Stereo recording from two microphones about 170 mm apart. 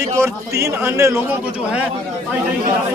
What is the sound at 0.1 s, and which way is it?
Speech, 15° right (ahead or behind).